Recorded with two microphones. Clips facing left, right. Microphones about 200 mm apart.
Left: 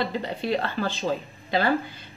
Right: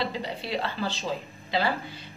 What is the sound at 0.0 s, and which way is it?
Speech, 50° left (ahead or behind).